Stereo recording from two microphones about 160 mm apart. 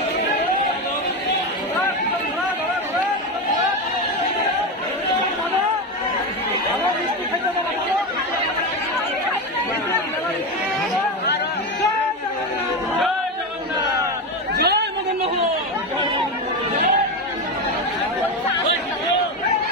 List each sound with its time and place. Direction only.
14.5 s chatter: 90° right